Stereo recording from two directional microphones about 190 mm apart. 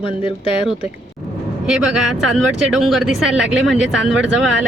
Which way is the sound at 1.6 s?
5° right (ahead or behind).